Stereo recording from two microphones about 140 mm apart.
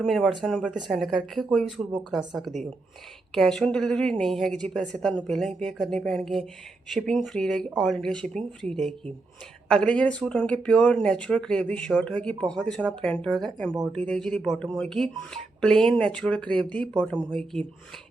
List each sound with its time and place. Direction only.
0.0 s a woman's voice: centre (ahead or behind)